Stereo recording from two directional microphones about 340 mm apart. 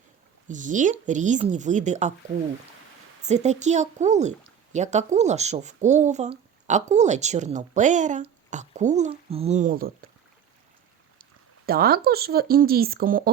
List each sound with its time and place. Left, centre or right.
0.4 s speech: right
3.2 s speech: centre
11.2 s speech: right